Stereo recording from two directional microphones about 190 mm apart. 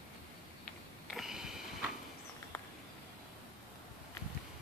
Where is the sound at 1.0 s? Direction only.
Centre (ahead or behind).